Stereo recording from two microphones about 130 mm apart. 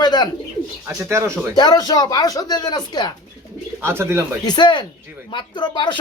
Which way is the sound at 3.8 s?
20° right (ahead or behind).